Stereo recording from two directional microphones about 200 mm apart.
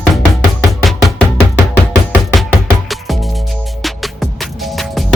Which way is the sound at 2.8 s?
Centre (ahead or behind).